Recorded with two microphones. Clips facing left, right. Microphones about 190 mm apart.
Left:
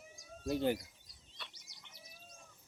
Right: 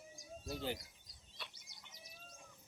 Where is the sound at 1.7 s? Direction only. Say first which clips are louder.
Even; 55° right (ahead or behind).